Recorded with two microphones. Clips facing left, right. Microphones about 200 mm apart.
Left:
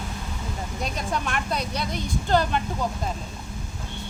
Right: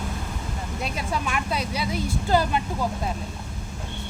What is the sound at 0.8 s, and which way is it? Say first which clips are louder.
Speech: even; 5° right (ahead or behind).